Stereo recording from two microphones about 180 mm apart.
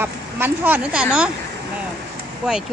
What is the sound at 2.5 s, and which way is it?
Speech, 5° right (ahead or behind).